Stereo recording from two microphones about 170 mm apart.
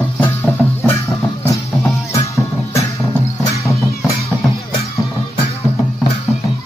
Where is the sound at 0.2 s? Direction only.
10° left (ahead or behind).